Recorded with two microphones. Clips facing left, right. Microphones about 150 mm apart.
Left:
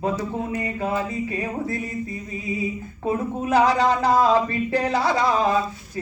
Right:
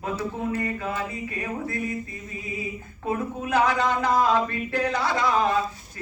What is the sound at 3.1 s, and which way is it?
A man's voice, 35° left (ahead or behind).